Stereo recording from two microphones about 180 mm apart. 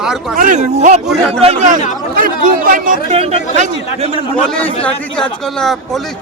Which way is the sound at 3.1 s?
35° right (ahead or behind).